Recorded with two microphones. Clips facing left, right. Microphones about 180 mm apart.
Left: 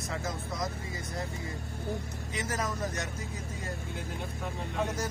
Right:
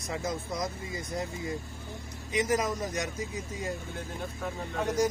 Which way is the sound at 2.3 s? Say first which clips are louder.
Right 6 dB; 15° right (ahead or behind).